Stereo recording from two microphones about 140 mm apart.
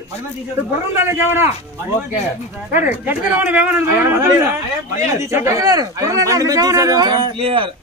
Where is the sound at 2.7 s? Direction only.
15° right (ahead or behind).